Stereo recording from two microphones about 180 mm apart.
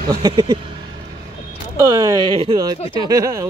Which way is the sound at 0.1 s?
20° right (ahead or behind).